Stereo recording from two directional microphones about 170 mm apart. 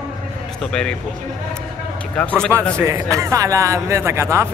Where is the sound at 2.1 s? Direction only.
5° left (ahead or behind).